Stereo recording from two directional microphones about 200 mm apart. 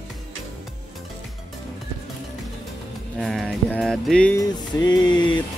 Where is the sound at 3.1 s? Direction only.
Centre (ahead or behind).